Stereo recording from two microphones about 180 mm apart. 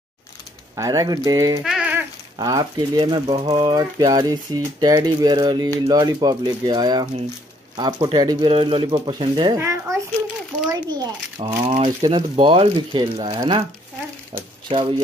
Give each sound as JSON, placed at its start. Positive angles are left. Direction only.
{"t": 0.7, "sound": "speech", "side_deg": -20}
{"t": 1.6, "sound": "a sound", "side_deg": -5}
{"t": 2.3, "sound": "speech", "side_deg": -20}
{"t": 9.6, "sound": "a child's voice", "side_deg": -15}
{"t": 14.7, "sound": "speech", "side_deg": -30}